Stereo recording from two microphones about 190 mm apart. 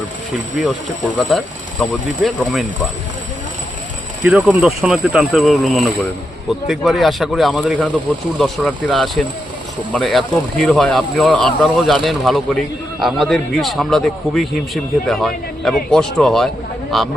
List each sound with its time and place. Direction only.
0.6 s speech: 5° left (ahead or behind)
4.2 s speech: 5° right (ahead or behind)